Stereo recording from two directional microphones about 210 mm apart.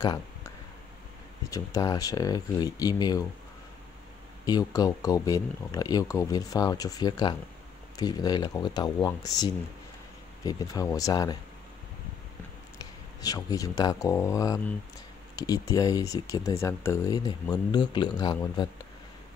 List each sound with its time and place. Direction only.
0.0 s a sound: 20° left (ahead or behind)
1.5 s speech: 15° left (ahead or behind)
4.5 s speech: 20° left (ahead or behind)
13.2 s speech: 15° left (ahead or behind)